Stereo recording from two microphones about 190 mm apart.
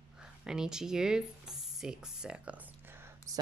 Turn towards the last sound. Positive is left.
turn(degrees=-15)  # may be behind; listen again after turning